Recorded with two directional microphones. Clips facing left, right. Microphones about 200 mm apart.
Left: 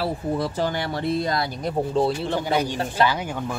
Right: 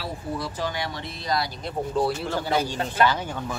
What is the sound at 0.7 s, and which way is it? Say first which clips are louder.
Speech: left 7 dB; 55° left (ahead or behind).